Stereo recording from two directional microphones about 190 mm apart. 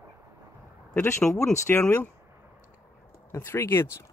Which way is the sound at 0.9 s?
10° left (ahead or behind).